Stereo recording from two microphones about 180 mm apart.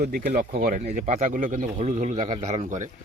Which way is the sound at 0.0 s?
55° right (ahead or behind).